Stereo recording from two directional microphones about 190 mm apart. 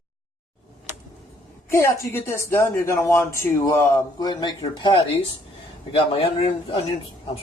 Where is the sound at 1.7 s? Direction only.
15° left (ahead or behind).